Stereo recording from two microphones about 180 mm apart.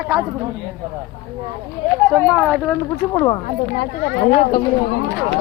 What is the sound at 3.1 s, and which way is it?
Speech, 20° left (ahead or behind).